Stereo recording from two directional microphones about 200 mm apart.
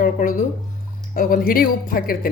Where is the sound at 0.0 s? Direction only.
45° left (ahead or behind).